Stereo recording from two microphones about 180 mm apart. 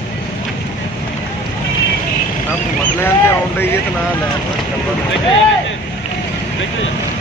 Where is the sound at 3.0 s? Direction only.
10° left (ahead or behind).